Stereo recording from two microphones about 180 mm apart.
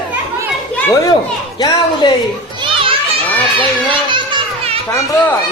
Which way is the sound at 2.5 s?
30° right (ahead or behind).